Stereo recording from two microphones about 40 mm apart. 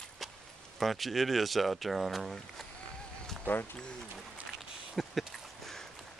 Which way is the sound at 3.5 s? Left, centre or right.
Left.